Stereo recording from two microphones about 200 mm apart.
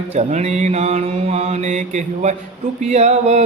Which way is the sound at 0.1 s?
35° right (ahead or behind).